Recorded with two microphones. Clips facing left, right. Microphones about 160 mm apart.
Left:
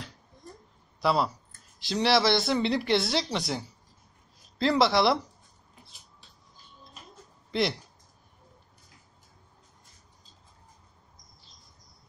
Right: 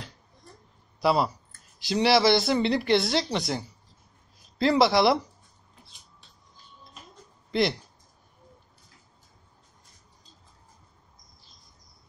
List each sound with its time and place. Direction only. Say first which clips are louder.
1.0 s speech: right 2 dB; 5° right (ahead or behind)